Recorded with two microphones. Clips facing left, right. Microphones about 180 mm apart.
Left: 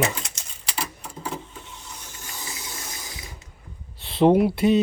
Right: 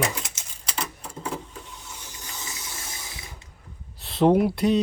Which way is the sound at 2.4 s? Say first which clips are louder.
Left 3 dB; 25° left (ahead or behind).